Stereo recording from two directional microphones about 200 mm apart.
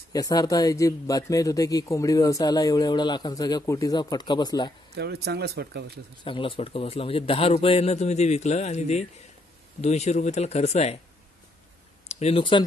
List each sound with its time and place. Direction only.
0.1 s speech: 20° left (ahead or behind)
4.9 s speech: 55° right (ahead or behind)
6.2 s speech: 25° left (ahead or behind)
12.1 s speech: 30° left (ahead or behind)